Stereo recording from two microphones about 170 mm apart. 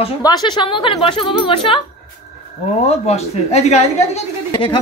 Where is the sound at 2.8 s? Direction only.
40° left (ahead or behind).